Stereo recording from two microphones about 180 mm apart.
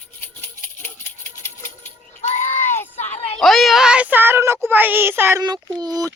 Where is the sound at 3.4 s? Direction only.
Centre (ahead or behind).